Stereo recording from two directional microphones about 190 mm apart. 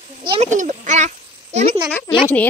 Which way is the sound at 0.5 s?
40° right (ahead or behind).